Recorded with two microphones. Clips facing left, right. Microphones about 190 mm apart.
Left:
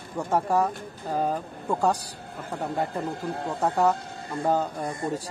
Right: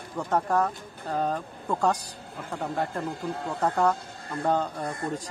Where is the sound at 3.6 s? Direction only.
5° left (ahead or behind).